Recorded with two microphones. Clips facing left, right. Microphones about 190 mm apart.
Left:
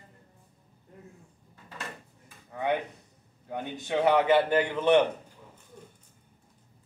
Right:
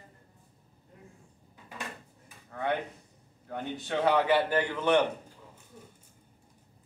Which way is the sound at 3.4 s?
15° left (ahead or behind).